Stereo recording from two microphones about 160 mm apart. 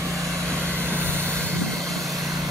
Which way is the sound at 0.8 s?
15° right (ahead or behind).